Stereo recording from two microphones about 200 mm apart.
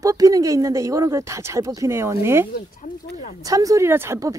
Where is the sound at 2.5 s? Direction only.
35° left (ahead or behind).